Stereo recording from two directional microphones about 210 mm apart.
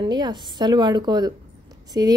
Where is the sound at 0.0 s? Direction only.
20° right (ahead or behind).